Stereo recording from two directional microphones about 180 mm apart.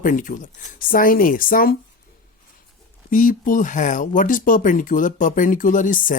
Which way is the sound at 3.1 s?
45° left (ahead or behind).